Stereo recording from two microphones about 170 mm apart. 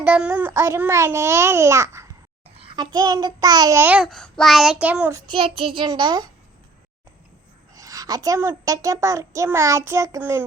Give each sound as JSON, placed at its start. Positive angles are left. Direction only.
{"t": 0.0, "sound": "child singing", "side_deg": -10}
{"t": 2.6, "sound": "a sound", "side_deg": -30}
{"t": 2.9, "sound": "child singing", "side_deg": -25}
{"t": 5.1, "sound": "a child's voice", "side_deg": -30}
{"t": 7.8, "sound": "a child's voice", "side_deg": -20}